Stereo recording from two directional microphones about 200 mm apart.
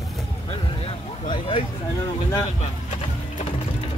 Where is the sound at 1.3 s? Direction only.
25° left (ahead or behind).